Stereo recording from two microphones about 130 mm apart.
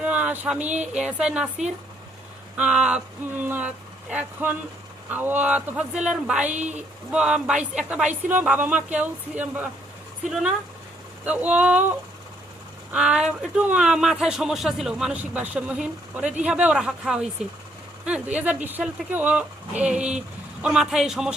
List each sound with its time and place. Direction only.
0.0 s a sound: 10° right (ahead or behind)
0.9 s speech: 10° right (ahead or behind)
6.6 s speech: 65° right (ahead or behind)
7.1 s speech: 5° right (ahead or behind)
11.3 s speech: 10° right (ahead or behind)
18.3 s speech: 15° right (ahead or behind)